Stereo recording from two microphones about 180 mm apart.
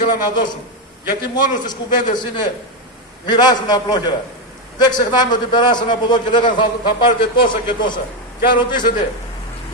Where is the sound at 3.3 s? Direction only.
25° left (ahead or behind).